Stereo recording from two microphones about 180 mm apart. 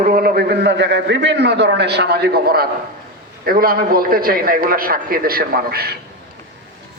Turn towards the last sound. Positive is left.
turn(degrees=-60)  # may be behind; listen again after turning